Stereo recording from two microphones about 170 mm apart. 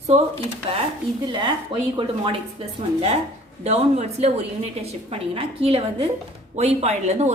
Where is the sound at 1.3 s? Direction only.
25° right (ahead or behind).